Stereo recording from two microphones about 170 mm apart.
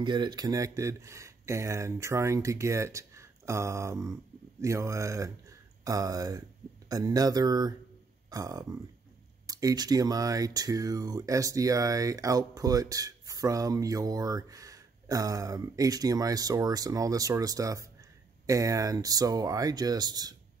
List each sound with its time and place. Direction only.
0.0 s speech: 25° right (ahead or behind)